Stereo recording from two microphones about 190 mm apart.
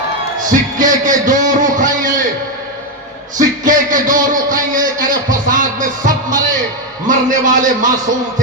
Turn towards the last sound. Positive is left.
turn(degrees=-40)  # may be behind; listen again after turning